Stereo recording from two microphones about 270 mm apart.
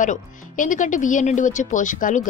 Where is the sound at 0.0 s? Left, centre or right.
Left.